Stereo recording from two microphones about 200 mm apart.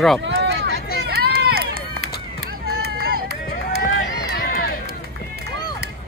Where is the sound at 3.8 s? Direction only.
50° left (ahead or behind).